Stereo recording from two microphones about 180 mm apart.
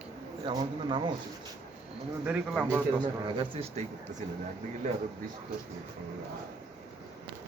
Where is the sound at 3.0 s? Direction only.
30° right (ahead or behind).